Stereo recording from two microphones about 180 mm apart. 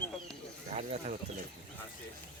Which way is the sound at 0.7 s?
35° right (ahead or behind).